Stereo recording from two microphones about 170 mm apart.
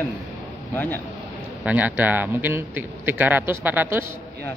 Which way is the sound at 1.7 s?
10° right (ahead or behind).